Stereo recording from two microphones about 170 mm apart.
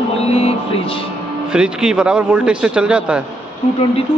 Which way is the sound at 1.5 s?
5° right (ahead or behind).